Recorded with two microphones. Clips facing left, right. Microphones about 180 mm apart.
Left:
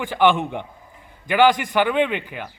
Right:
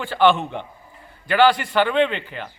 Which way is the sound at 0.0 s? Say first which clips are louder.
Even; 15° left (ahead or behind).